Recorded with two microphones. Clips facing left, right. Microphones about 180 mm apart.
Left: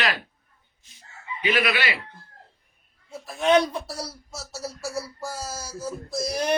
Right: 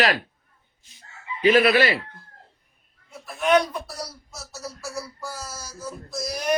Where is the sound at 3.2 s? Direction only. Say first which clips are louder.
Even; 25° left (ahead or behind).